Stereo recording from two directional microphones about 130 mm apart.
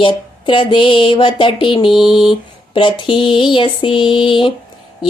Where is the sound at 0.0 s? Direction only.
40° left (ahead or behind).